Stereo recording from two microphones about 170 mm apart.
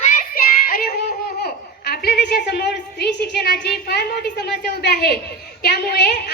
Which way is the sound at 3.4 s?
70° left (ahead or behind).